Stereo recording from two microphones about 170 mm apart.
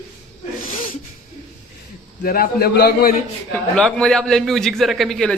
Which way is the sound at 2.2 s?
60° left (ahead or behind).